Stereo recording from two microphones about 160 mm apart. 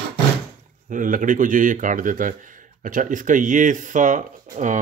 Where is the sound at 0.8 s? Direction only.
55° right (ahead or behind).